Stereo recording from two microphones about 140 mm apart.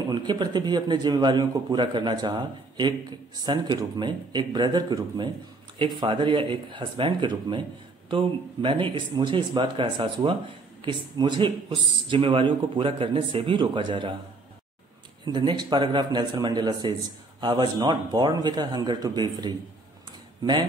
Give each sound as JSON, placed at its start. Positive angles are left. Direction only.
{"t": 0.1, "sound": "a man's voice", "side_deg": -30}
{"t": 15.3, "sound": "a man's voice", "side_deg": -35}